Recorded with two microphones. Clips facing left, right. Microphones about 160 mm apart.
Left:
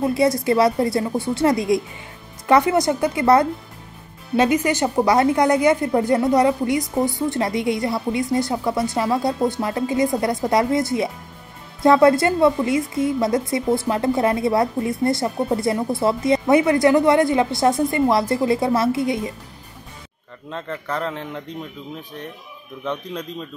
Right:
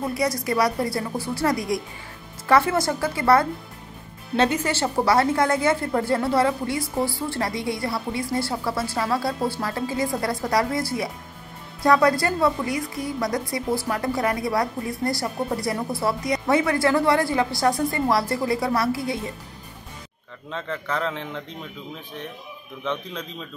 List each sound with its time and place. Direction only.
0.1 s a woman's voice: 25° left (ahead or behind)
20.4 s a man's voice: 5° left (ahead or behind)